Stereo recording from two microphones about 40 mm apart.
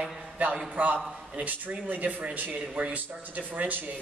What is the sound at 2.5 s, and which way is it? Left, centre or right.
Speech, right.